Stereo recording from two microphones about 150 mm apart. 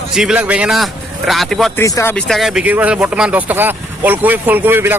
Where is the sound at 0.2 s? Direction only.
5° right (ahead or behind).